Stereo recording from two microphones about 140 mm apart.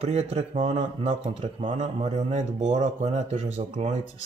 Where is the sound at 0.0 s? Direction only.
45° right (ahead or behind).